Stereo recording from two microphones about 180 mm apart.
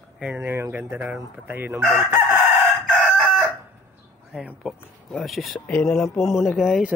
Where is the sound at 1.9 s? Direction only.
15° right (ahead or behind).